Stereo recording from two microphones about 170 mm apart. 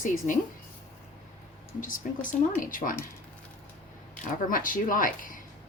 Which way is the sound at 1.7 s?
50° left (ahead or behind).